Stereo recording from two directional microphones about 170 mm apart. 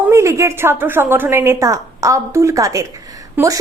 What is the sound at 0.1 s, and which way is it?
A woman's voice, 15° right (ahead or behind).